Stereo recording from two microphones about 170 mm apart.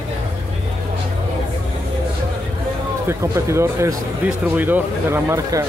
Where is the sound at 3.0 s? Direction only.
15° right (ahead or behind).